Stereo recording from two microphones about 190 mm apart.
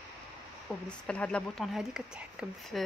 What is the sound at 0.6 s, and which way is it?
Speech, 5° left (ahead or behind).